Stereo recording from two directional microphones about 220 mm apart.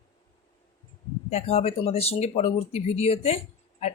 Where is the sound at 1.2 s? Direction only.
30° left (ahead or behind).